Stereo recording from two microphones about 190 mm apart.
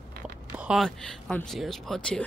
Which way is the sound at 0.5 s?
5° right (ahead or behind).